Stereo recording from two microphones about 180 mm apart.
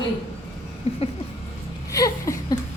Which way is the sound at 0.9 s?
35° left (ahead or behind).